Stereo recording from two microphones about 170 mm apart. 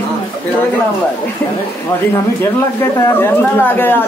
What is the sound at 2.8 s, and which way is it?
Speech, 15° left (ahead or behind).